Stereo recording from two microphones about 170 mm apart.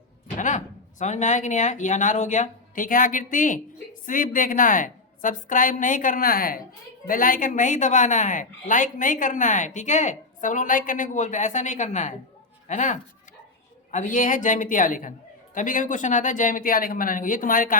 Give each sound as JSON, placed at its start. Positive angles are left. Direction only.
{"t": 0.3, "sound": "a woman's voice", "side_deg": 45}